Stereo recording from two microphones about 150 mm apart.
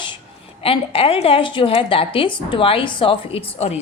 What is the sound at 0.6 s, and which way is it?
A woman's voice, 40° left (ahead or behind).